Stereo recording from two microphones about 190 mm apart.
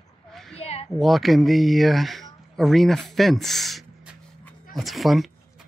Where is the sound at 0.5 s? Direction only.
30° left (ahead or behind).